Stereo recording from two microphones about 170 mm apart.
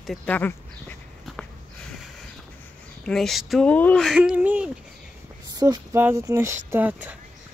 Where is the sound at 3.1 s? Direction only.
Centre (ahead or behind).